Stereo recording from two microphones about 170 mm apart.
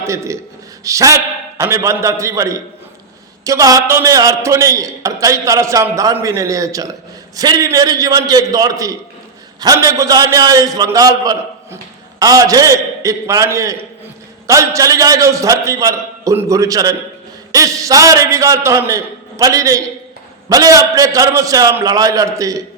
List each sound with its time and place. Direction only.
0.0 s a man's voice: 15° right (ahead or behind)